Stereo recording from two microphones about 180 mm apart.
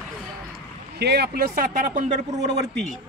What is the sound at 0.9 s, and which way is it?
Speech, 65° right (ahead or behind).